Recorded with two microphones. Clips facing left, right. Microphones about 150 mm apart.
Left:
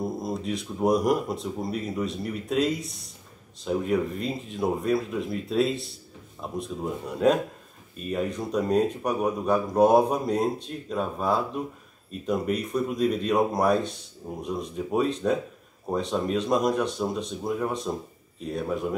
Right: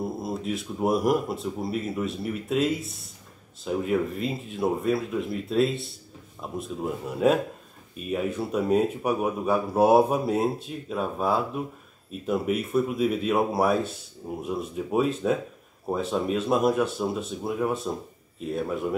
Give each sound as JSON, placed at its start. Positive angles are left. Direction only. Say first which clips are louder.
{"t": 0.0, "sound": "speech", "louder": "even", "side_deg": -5}